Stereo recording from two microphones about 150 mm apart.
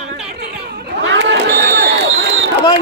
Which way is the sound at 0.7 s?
90° right.